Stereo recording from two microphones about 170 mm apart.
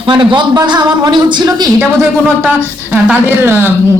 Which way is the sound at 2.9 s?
10° right (ahead or behind).